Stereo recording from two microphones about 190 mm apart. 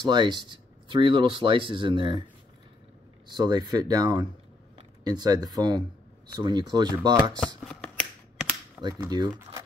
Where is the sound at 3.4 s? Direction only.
20° right (ahead or behind).